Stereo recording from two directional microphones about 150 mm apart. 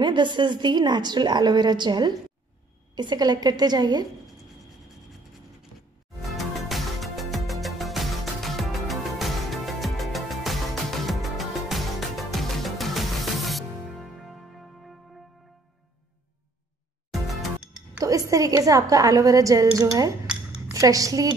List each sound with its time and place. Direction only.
0.0 s a woman's voice: 30° right (ahead or behind)
6.3 s music: centre (ahead or behind)
17.1 s music: centre (ahead or behind)
17.9 s a woman's voice: 20° right (ahead or behind)